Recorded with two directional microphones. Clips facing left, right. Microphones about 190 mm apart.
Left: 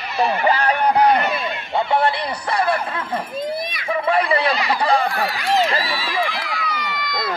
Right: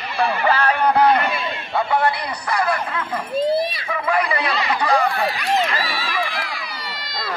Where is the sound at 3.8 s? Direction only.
30° left (ahead or behind).